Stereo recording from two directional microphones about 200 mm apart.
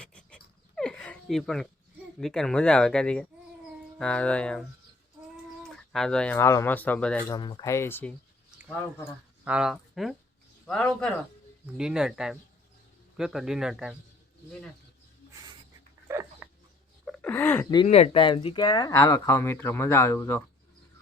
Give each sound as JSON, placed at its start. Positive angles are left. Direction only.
{"t": 0.0, "sound": "a sound", "side_deg": 5}
{"t": 2.1, "sound": "speech", "side_deg": 0}
{"t": 5.6, "sound": "speech", "side_deg": 5}
{"t": 7.3, "sound": "speech", "side_deg": 20}
{"t": 9.4, "sound": "speech", "side_deg": -5}
{"t": 16.0, "sound": "dog", "side_deg": -15}
{"t": 17.1, "sound": "a sound", "side_deg": 5}
{"t": 17.8, "sound": "speech", "side_deg": 30}